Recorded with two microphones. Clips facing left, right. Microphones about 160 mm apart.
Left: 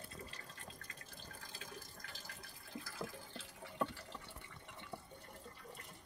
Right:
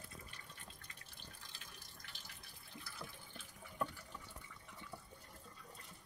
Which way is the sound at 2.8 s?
90° left.